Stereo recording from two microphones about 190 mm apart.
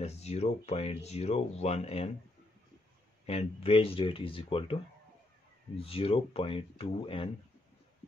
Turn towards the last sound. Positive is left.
turn(degrees=30)  # may be behind; listen again after turning